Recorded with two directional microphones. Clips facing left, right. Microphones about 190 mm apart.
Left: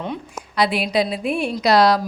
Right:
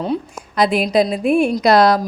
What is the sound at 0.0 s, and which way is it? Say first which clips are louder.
A woman's voice: right 7 dB; 40° right (ahead or behind).